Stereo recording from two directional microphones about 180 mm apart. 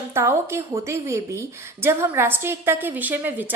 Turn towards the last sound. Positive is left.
turn(degrees=-10)  # may be behind; listen again after turning